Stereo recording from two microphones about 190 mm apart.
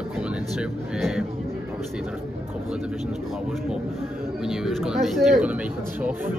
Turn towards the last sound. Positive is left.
turn(degrees=-10)  # may be behind; listen again after turning